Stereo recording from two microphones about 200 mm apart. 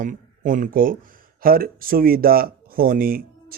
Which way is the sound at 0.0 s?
40° right (ahead or behind).